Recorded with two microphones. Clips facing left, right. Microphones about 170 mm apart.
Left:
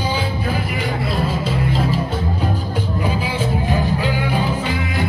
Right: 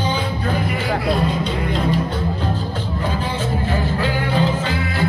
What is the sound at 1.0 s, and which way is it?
Music, 5° left (ahead or behind).